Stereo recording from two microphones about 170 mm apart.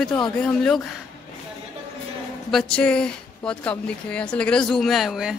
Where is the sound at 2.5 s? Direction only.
5° left (ahead or behind).